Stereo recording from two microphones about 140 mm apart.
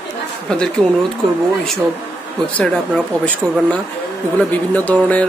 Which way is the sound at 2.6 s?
5° left (ahead or behind).